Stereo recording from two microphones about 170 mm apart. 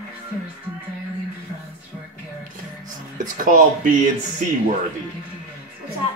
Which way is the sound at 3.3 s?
50° right (ahead or behind).